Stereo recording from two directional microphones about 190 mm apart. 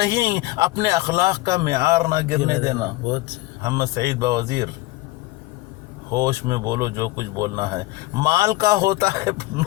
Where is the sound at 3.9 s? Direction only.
55° right (ahead or behind).